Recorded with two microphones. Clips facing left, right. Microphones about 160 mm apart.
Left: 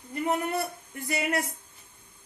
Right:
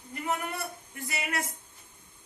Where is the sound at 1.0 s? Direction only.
40° left (ahead or behind).